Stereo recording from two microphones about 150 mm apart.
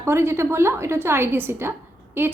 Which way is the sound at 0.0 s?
15° right (ahead or behind).